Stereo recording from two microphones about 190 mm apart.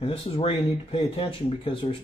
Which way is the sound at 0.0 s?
30° left (ahead or behind).